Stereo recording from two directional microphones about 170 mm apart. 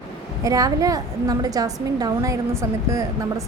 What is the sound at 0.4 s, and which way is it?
A woman's voice, 20° right (ahead or behind).